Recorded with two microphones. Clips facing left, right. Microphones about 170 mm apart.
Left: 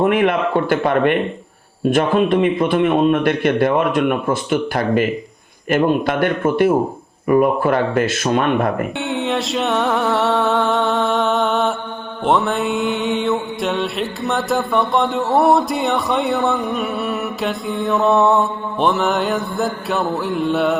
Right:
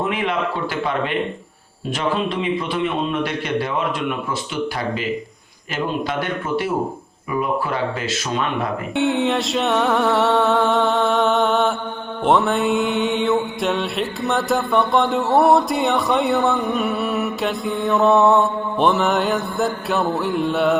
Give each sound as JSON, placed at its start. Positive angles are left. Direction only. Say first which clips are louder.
{"t": 0.0, "sound": "a man's voice", "louder": "left 6 dB", "side_deg": 55}
{"t": 9.0, "sound": "mantra", "louder": "right 2 dB", "side_deg": 0}